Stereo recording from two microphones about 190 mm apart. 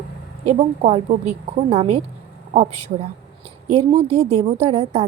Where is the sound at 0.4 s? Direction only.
35° right (ahead or behind).